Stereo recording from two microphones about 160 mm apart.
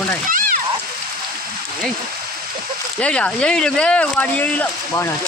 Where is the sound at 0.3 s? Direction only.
60° right (ahead or behind).